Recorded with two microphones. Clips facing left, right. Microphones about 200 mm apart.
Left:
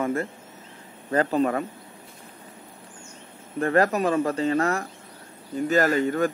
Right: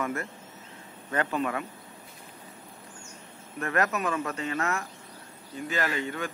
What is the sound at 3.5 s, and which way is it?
Speech, 30° left (ahead or behind).